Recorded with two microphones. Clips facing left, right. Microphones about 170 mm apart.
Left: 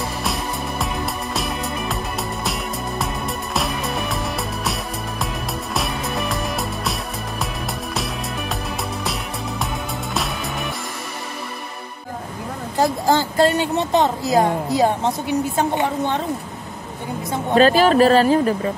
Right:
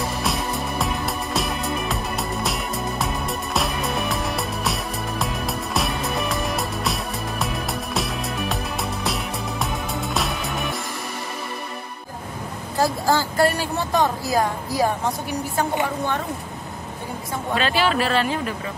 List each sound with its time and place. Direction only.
0.2 s music: centre (ahead or behind)
12.7 s a woman's voice: 20° left (ahead or behind)
17.6 s speech: 40° left (ahead or behind)